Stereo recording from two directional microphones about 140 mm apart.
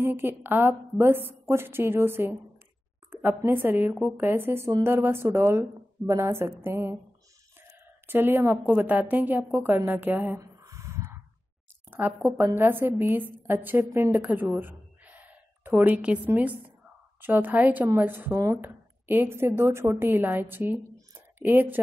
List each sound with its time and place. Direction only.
0.0 s a woman's voice: 15° right (ahead or behind)
8.1 s speech: 15° right (ahead or behind)
10.3 s a sound: 20° right (ahead or behind)
11.9 s a woman's voice: 15° right (ahead or behind)